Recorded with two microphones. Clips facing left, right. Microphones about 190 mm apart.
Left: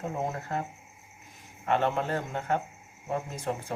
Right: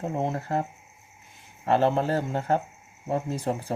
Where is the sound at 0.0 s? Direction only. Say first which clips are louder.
Right 4 dB; 30° right (ahead or behind).